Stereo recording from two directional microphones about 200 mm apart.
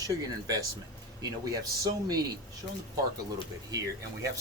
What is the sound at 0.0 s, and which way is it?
Speech, 20° right (ahead or behind).